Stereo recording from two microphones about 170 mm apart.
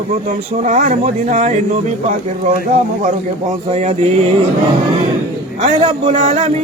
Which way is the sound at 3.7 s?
40° right (ahead or behind).